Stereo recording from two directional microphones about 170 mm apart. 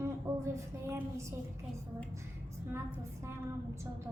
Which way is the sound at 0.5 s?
15° right (ahead or behind).